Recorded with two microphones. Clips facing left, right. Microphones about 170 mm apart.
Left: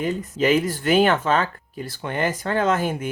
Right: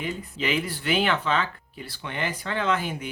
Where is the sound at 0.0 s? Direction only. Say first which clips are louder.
Left 8 dB; 45° left (ahead or behind).